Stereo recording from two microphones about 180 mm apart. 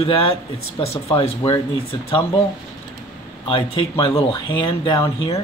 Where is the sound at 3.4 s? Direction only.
30° left (ahead or behind).